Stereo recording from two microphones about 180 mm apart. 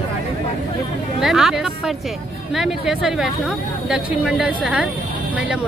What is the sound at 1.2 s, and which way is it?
Speech, centre (ahead or behind).